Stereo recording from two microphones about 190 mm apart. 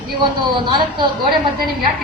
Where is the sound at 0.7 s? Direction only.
25° right (ahead or behind).